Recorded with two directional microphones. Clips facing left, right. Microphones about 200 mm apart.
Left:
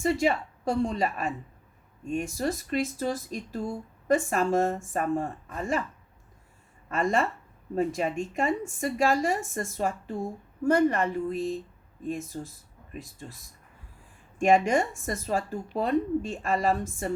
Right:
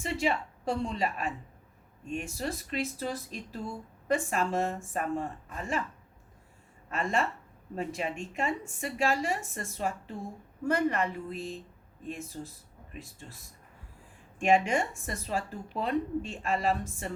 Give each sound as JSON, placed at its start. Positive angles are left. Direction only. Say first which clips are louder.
{"t": 0.0, "sound": "speech", "louder": "left 5 dB", "side_deg": 45}
{"t": 6.9, "sound": "speech", "louder": "left 4 dB", "side_deg": 45}
{"t": 14.3, "sound": "speech", "louder": "left 4 dB", "side_deg": 40}